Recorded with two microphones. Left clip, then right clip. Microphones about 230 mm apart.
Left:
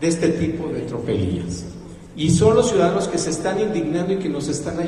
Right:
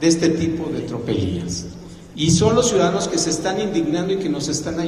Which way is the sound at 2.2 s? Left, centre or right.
Right.